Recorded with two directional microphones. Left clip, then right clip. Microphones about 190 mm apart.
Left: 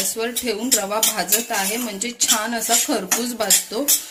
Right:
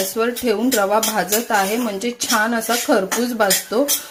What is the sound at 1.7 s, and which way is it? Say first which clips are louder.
Speech: right 4 dB; 45° right (ahead or behind).